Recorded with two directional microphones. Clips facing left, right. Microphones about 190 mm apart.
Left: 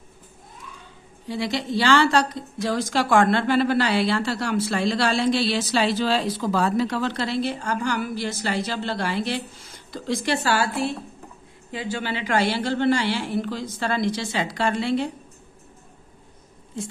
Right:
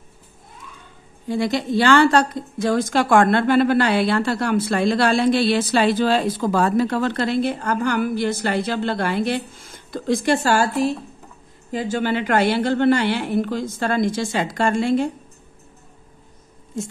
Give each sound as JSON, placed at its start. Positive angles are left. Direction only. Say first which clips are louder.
{"t": 1.2, "sound": "a woman's voice", "louder": "right 5 dB", "side_deg": -50}
{"t": 16.8, "sound": "a woman's voice", "louder": "right 4 dB", "side_deg": -45}